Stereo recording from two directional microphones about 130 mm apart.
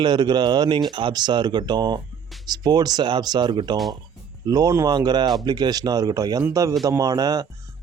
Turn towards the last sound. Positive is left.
turn(degrees=-30)  # may be behind; listen again after turning